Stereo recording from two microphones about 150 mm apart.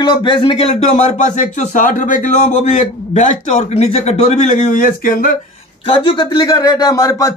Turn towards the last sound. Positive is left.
turn(degrees=20)  # may be behind; listen again after turning